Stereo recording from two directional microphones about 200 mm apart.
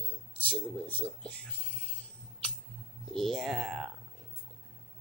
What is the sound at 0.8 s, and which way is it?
Speech, 30° left (ahead or behind).